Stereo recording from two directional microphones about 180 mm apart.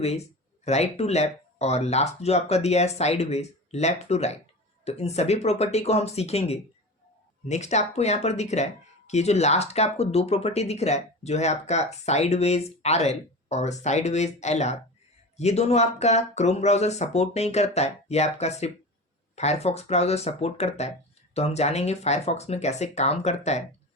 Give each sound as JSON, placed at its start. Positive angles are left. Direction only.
{"t": 0.0, "sound": "speech", "side_deg": 35}